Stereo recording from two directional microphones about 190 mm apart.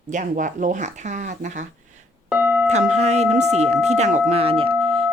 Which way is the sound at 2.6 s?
35° right (ahead or behind).